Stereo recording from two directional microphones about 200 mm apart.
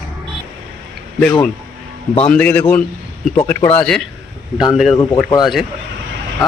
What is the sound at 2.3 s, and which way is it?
Speech, 5° left (ahead or behind).